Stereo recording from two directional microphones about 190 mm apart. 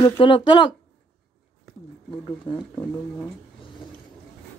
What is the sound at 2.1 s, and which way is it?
Speech, 25° left (ahead or behind).